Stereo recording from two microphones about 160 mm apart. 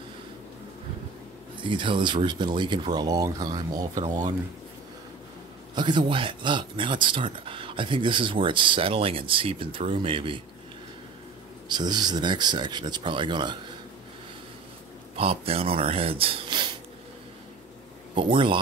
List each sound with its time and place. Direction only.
1.6 s speech: 30° right (ahead or behind)
5.8 s speech: 30° right (ahead or behind)
11.7 s speech: 25° right (ahead or behind)
15.1 s speech: 35° right (ahead or behind)
18.1 s speech: 30° right (ahead or behind)